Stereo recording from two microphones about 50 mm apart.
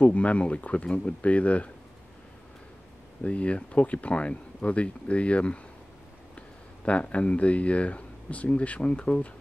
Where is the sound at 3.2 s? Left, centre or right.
Left.